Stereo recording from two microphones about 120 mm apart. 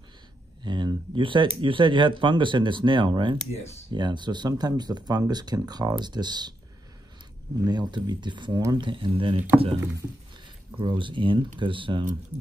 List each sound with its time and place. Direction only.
0.7 s speech: 40° right (ahead or behind)
3.5 s speech: 65° left (ahead or behind)
3.9 s speech: 40° right (ahead or behind)
7.6 s speech: 35° right (ahead or behind)
10.8 s speech: 45° right (ahead or behind)